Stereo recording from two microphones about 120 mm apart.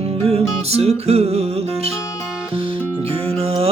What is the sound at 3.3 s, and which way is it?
Music, 55° right (ahead or behind).